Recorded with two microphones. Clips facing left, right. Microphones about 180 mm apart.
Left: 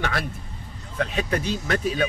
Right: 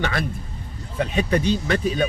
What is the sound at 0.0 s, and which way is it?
Speech, centre (ahead or behind).